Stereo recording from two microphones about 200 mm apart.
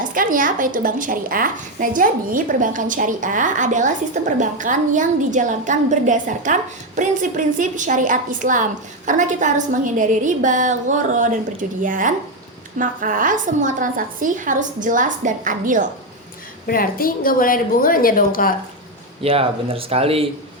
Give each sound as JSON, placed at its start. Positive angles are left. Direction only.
{"t": 0.0, "sound": "a woman's voice", "side_deg": -45}
{"t": 16.6, "sound": "a woman's voice", "side_deg": 45}
{"t": 19.2, "sound": "speech", "side_deg": -30}